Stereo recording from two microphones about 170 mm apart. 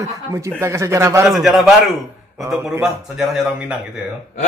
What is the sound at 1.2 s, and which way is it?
A man's voice, centre (ahead or behind).